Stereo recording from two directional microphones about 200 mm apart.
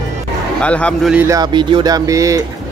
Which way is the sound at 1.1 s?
15° right (ahead or behind).